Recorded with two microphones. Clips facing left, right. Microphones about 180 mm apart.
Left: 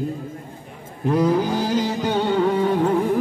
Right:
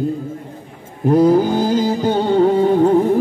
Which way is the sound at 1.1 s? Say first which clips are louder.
Right 7 dB; 35° right (ahead or behind).